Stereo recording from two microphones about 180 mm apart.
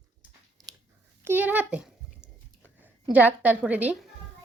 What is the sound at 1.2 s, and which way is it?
Speech, 10° right (ahead or behind).